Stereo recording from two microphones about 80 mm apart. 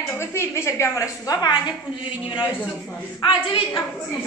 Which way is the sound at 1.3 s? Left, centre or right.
Left.